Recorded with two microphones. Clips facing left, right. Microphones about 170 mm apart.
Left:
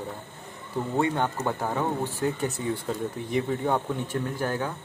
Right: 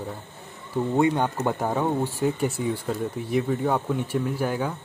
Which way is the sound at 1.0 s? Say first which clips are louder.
Right 3 dB; 15° right (ahead or behind).